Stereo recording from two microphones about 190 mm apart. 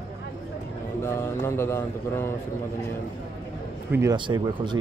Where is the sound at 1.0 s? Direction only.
15° left (ahead or behind).